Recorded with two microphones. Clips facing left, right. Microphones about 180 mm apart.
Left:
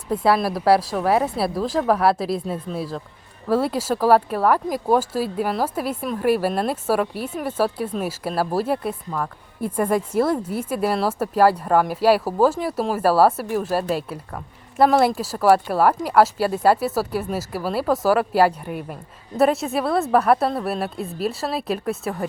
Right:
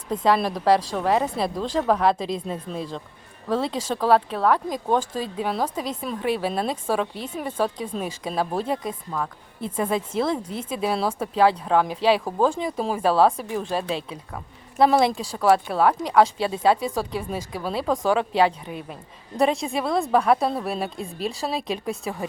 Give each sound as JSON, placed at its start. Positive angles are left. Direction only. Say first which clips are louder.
{"t": 0.1, "sound": "a woman's voice", "louder": "left 2 dB", "side_deg": 10}